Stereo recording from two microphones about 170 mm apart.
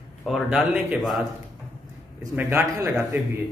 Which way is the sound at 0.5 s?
5° right (ahead or behind).